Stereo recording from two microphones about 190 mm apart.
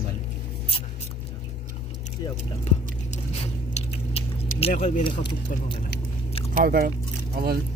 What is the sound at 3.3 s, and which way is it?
Biting, 35° left (ahead or behind).